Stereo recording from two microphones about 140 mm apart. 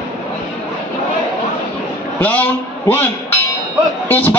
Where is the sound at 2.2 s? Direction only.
10° left (ahead or behind).